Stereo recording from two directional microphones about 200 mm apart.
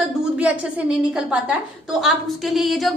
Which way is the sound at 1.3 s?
5° right (ahead or behind).